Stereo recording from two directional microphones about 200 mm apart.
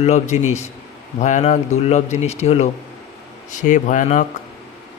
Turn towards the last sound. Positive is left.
turn(degrees=40)  # may be behind; listen again after turning